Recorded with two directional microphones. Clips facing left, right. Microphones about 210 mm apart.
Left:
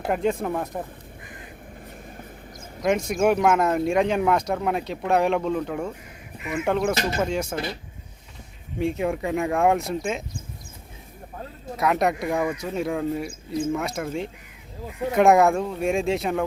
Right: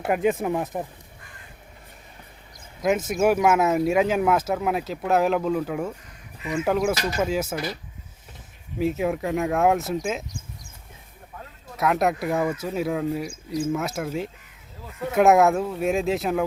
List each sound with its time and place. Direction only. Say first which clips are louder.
0.0 s speech: right 1 dB; 5° right (ahead or behind)
3.1 s speech: even; 5° right (ahead or behind)
6.9 s speech: left 1 dB; 25° left (ahead or behind)
7.2 s speech: right 1 dB; 5° right (ahead or behind)
7.5 s speech: even; 25° left (ahead or behind)
8.8 s speech: right 1 dB; 5° right (ahead or behind)
11.8 s speech: even; centre (ahead or behind)